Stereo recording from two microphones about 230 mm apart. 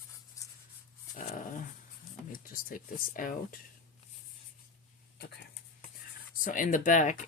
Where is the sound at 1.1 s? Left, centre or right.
Left.